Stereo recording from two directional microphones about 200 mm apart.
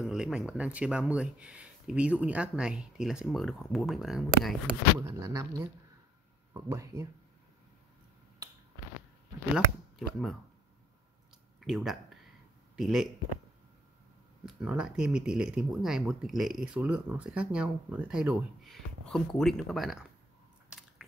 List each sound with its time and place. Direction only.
0.0 s speech: centre (ahead or behind)
4.9 s speech: 15° right (ahead or behind)
9.9 s speech: centre (ahead or behind)
11.6 s speech: centre (ahead or behind)
14.4 s speech: 5° right (ahead or behind)
20.7 s biting: 5° right (ahead or behind)